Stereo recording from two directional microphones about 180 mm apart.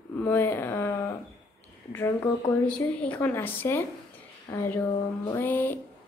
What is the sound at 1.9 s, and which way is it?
A woman's voice, 10° left (ahead or behind).